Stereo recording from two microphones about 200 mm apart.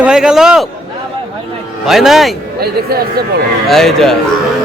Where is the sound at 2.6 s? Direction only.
50° right (ahead or behind).